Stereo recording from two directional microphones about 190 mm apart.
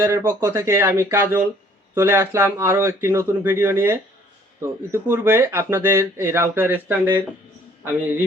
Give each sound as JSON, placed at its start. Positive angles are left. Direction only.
{"t": 0.0, "sound": "speech", "side_deg": -15}